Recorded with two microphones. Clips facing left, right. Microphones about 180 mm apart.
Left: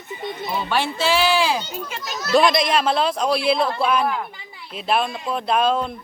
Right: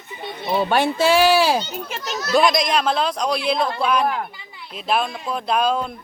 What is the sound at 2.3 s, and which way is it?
Speech, centre (ahead or behind).